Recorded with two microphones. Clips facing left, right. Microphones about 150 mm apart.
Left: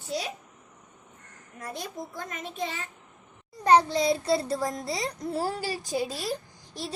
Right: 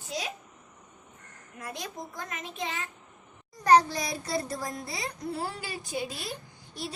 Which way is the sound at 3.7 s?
25° left (ahead or behind).